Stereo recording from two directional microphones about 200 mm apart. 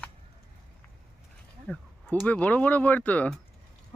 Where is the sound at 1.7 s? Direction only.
5° left (ahead or behind).